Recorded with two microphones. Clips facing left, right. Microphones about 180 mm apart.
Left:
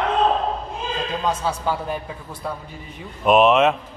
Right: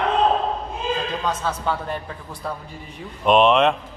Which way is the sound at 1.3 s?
10° left (ahead or behind).